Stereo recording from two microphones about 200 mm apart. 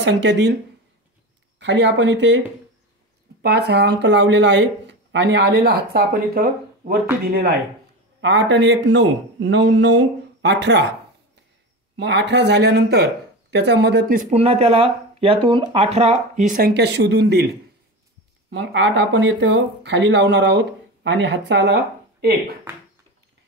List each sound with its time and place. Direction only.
0.0 s speech: 60° right (ahead or behind)
1.6 s speech: 60° right (ahead or behind)
3.4 s speech: 55° right (ahead or behind)
8.2 s speech: 60° right (ahead or behind)
12.0 s speech: 60° right (ahead or behind)
18.5 s speech: 65° right (ahead or behind)